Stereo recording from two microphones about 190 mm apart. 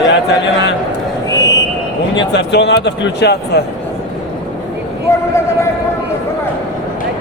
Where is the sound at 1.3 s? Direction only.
20° left (ahead or behind).